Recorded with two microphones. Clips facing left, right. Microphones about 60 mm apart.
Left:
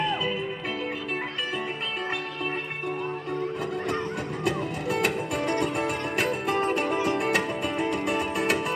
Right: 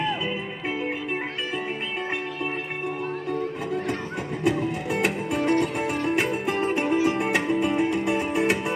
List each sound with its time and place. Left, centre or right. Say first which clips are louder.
4.5 s music: right 4 dB; right